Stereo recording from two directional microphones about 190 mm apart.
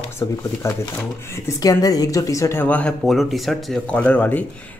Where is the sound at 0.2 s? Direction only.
15° left (ahead or behind).